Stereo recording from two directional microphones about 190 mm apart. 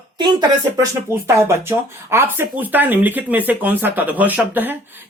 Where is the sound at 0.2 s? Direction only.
20° right (ahead or behind).